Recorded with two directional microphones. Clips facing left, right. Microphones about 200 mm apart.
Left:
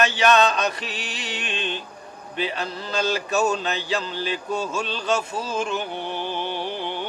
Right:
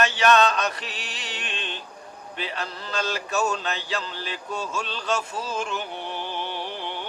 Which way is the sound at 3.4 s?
10° left (ahead or behind).